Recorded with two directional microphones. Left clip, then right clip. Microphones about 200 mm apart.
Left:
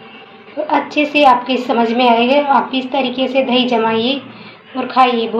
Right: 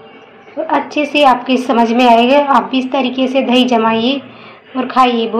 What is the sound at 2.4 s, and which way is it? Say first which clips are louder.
Speech: right 2 dB; 35° right (ahead or behind).